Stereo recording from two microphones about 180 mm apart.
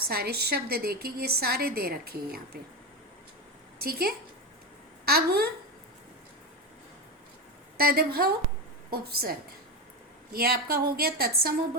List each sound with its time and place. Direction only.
0.1 s a woman's voice: 60° right (ahead or behind)
3.8 s a woman's voice: 60° right (ahead or behind)
7.8 s a woman's voice: 55° right (ahead or behind)